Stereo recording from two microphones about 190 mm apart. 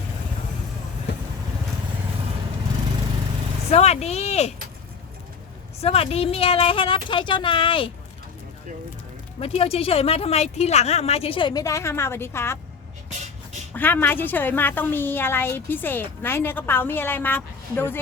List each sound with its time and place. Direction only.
1.1 s vehicle: 65° left (ahead or behind)
3.7 s speech: 35° left (ahead or behind)
5.8 s speech: 30° left (ahead or behind)
9.4 s speech: 30° left (ahead or behind); by 12.5 s 15° left (ahead or behind)
13.7 s a woman's voice: 10° left (ahead or behind)